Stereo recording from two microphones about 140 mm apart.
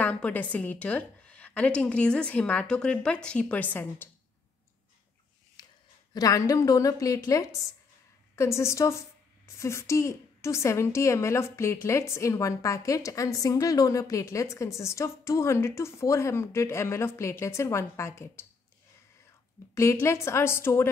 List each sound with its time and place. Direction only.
0.0 s a woman's voice: 10° left (ahead or behind)
5.6 s a sound: 30° left (ahead or behind)
6.1 s a woman's voice: 25° left (ahead or behind)
19.7 s a woman's voice: 20° left (ahead or behind)